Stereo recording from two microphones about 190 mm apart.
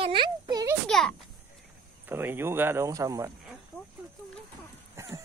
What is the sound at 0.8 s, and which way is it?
Speech, centre (ahead or behind).